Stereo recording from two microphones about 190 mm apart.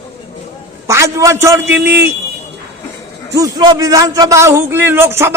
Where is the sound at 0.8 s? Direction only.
15° right (ahead or behind).